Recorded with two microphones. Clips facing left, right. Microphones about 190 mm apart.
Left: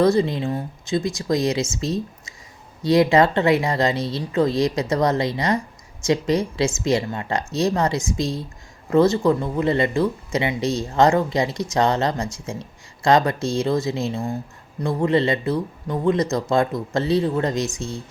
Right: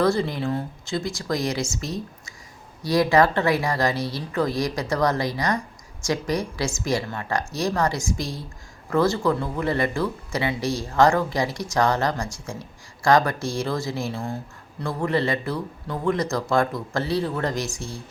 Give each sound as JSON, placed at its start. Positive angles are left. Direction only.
{"t": 0.0, "sound": "speech", "side_deg": 20}